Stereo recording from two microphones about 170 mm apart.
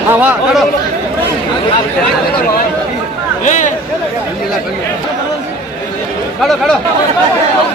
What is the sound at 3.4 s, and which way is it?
Speech, 50° left (ahead or behind).